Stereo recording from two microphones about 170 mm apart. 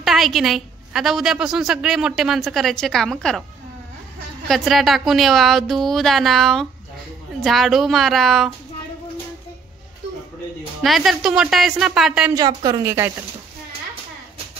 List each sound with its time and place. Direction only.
0.0 s a woman's voice: centre (ahead or behind)
4.5 s a woman's voice: centre (ahead or behind)
10.8 s a woman's voice: centre (ahead or behind)
12.3 s a woman's voice: 20° right (ahead or behind)